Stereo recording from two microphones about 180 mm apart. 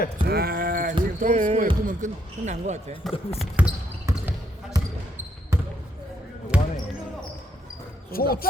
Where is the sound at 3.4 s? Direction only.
5° right (ahead or behind).